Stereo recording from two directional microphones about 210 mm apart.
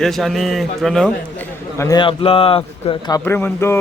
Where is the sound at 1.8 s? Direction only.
20° left (ahead or behind).